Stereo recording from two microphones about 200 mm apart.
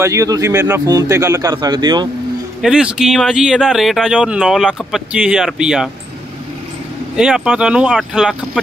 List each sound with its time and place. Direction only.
0.0 s a man's voice: 15° right (ahead or behind)
2.6 s speech: 5° right (ahead or behind)
7.2 s speech: 5° right (ahead or behind)